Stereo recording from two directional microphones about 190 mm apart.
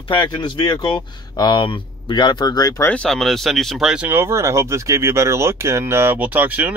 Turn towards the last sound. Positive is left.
turn(degrees=-10)  # may be behind; listen again after turning